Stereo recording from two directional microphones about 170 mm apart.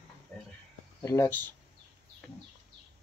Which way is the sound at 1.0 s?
15° left (ahead or behind).